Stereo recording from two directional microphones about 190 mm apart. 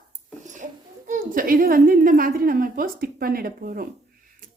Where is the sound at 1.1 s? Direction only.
45° right (ahead or behind).